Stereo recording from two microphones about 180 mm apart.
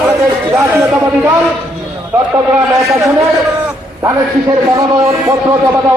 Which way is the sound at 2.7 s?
20° right (ahead or behind).